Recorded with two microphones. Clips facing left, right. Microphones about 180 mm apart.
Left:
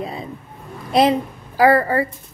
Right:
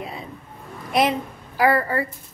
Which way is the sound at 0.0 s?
35° left (ahead or behind).